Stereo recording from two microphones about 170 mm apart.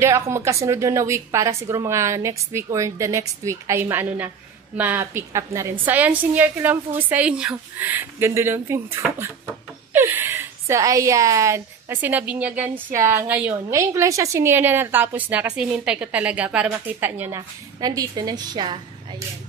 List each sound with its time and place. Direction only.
0.0 s a woman's voice: 15° right (ahead or behind)